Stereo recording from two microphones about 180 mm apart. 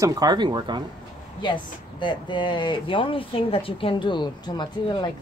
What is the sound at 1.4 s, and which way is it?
Speech, 25° left (ahead or behind).